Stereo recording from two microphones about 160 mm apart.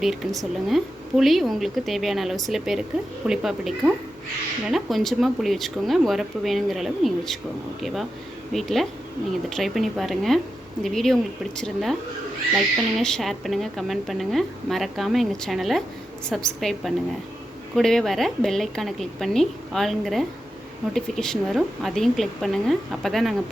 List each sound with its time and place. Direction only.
0.0 s a woman's voice: centre (ahead or behind)
8.5 s a woman's voice: centre (ahead or behind)